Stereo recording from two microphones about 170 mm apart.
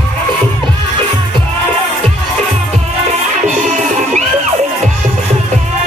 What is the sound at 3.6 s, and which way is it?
Music, 45° right (ahead or behind).